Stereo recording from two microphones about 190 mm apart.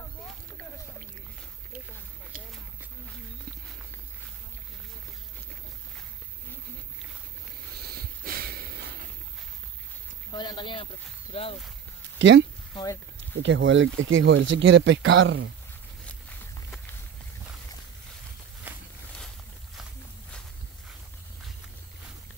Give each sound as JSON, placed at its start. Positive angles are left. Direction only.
{"t": 7.9, "sound": "sniff", "side_deg": -55}
{"t": 10.3, "sound": "speech", "side_deg": 25}
{"t": 12.2, "sound": "speech", "side_deg": -80}
{"t": 12.7, "sound": "speech", "side_deg": 15}
{"t": 13.4, "sound": "speech", "side_deg": -80}
{"t": 16.1, "sound": "a sound", "side_deg": 5}